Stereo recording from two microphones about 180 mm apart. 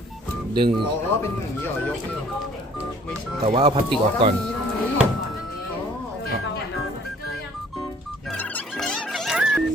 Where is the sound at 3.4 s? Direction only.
35° right (ahead or behind).